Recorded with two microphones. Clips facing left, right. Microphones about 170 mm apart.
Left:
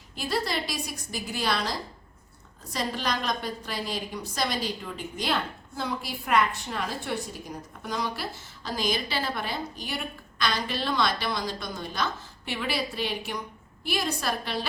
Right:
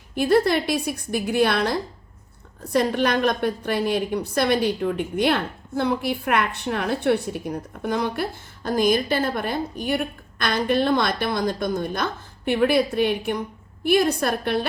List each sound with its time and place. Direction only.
0.2 s a woman's voice: 55° right (ahead or behind)